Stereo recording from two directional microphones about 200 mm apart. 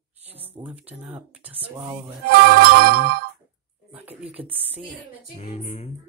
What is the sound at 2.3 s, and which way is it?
Music, 50° right (ahead or behind).